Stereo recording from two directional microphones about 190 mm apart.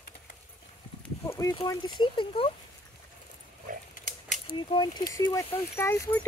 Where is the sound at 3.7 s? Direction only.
45° right (ahead or behind).